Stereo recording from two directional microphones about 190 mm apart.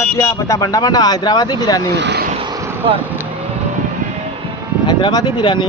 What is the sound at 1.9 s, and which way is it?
Speech, 65° right (ahead or behind).